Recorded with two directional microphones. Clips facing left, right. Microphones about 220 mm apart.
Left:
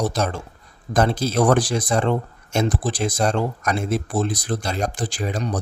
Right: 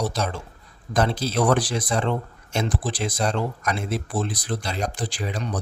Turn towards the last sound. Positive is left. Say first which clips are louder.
# left 4 dB
turn(degrees=45)  # may be behind; listen again after turning